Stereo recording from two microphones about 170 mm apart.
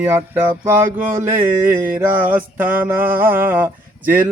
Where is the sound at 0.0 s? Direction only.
15° right (ahead or behind).